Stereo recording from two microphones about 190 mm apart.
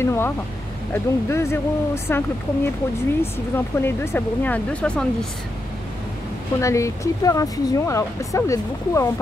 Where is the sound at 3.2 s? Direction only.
10° left (ahead or behind).